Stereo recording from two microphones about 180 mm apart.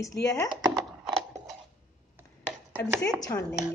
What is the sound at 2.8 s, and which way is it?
Speech, 10° left (ahead or behind).